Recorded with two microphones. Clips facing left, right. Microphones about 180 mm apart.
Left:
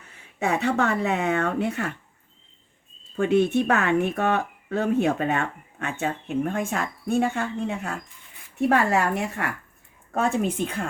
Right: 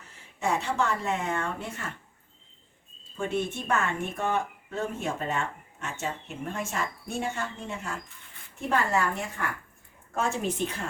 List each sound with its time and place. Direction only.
0.1 s speech: 60° left (ahead or behind)
3.2 s speech: 65° left (ahead or behind)
10.2 s speech: 55° left (ahead or behind)